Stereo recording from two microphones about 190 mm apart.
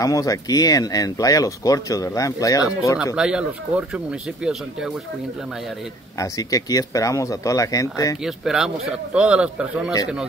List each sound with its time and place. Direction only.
0.0 s speech: 20° left (ahead or behind)
3.2 s speech: 5° right (ahead or behind)
6.1 s speech: 15° left (ahead or behind)
8.2 s speech: 5° right (ahead or behind)